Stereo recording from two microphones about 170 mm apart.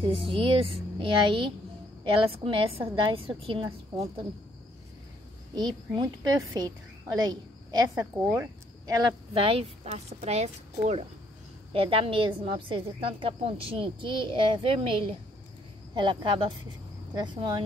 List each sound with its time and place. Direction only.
0.0 s a woman's voice: 30° right (ahead or behind)
5.5 s a woman's voice: 25° right (ahead or behind)